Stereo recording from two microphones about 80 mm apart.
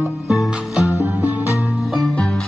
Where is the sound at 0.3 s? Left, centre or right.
Centre.